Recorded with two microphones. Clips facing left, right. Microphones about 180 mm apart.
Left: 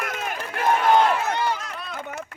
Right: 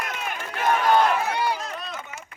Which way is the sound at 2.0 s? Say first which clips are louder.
Left 7 dB; 60° left (ahead or behind).